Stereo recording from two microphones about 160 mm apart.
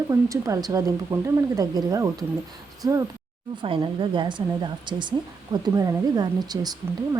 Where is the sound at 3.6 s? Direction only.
30° right (ahead or behind).